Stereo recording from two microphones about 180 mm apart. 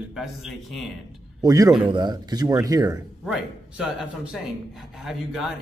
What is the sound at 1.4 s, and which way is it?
Speech, 20° right (ahead or behind).